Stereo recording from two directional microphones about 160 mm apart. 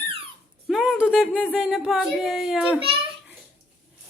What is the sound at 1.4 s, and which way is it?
Speech, 5° right (ahead or behind).